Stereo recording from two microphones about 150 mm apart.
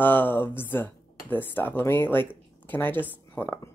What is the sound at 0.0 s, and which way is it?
Speech, 15° left (ahead or behind).